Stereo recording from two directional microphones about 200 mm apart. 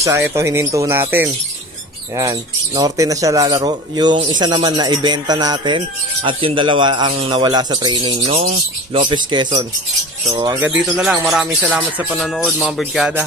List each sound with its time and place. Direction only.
0.0 s speech: 15° right (ahead or behind)